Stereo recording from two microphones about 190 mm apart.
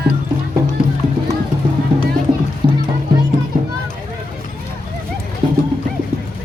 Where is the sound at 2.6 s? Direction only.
25° right (ahead or behind).